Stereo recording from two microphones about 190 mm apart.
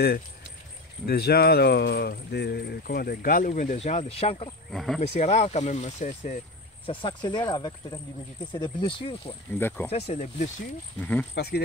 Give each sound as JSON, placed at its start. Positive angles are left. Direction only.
{"t": 1.0, "sound": "speech", "side_deg": 55}
{"t": 4.6, "sound": "speech", "side_deg": 0}
{"t": 5.0, "sound": "speech", "side_deg": 35}
{"t": 6.9, "sound": "speech", "side_deg": 25}
{"t": 9.6, "sound": "speech", "side_deg": 10}
{"t": 9.8, "sound": "speech", "side_deg": 35}
{"t": 11.0, "sound": "speech", "side_deg": 10}
{"t": 11.3, "sound": "speech", "side_deg": 55}